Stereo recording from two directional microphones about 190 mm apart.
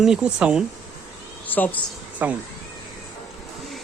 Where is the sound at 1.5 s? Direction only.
10° left (ahead or behind).